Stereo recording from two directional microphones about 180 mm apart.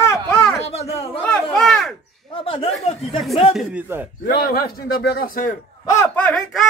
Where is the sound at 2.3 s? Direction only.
30° left (ahead or behind).